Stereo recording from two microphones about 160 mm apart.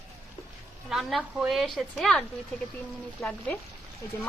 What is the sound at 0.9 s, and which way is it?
A woman's voice, centre (ahead or behind).